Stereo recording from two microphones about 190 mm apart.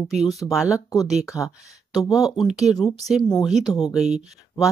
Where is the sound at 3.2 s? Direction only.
20° left (ahead or behind).